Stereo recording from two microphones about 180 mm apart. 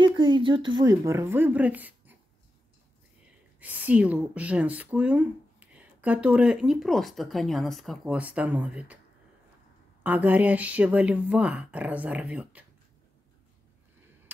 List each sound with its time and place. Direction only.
0.0 s speech: 25° right (ahead or behind); by 2.1 s 10° right (ahead or behind)
3.5 s speech: 10° right (ahead or behind)
10.0 s speech: 10° right (ahead or behind)